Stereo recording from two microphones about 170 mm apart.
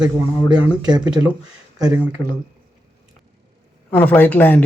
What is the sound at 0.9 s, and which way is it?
Speech, 25° right (ahead or behind).